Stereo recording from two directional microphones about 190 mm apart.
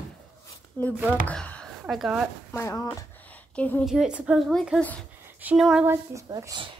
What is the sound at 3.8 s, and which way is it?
A woman's voice, 5° right (ahead or behind).